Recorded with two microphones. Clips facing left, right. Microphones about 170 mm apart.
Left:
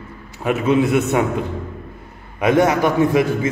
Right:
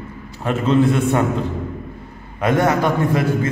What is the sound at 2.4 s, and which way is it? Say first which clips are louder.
A man's voice: left 2 dB; 15° left (ahead or behind).